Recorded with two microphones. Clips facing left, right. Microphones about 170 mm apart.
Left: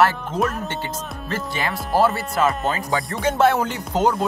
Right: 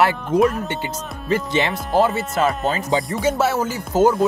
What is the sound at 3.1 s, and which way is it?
Music, 5° right (ahead or behind).